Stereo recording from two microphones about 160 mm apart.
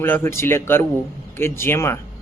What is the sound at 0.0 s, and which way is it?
Speech, 15° left (ahead or behind).